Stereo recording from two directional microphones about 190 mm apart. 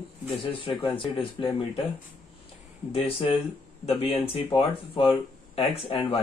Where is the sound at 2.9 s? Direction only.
30° left (ahead or behind).